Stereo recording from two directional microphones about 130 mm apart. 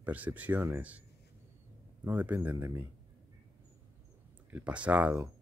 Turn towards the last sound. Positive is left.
turn(degrees=-10)  # may be behind; listen again after turning